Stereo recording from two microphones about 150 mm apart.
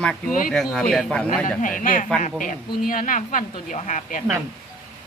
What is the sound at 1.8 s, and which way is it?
Speech, 60° left (ahead or behind).